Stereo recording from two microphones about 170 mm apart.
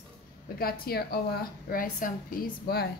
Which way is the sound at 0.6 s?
65° left (ahead or behind).